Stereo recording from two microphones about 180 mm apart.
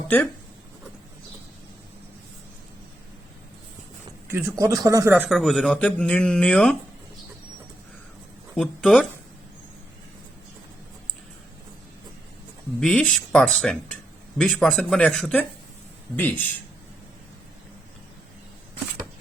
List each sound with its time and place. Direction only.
4.3 s speech: 15° right (ahead or behind)
5.1 s speech: centre (ahead or behind)
8.5 s speech: 5° left (ahead or behind)
12.8 s speech: 5° left (ahead or behind)